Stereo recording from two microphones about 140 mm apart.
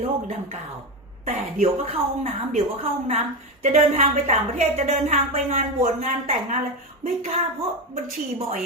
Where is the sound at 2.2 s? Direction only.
50° right (ahead or behind).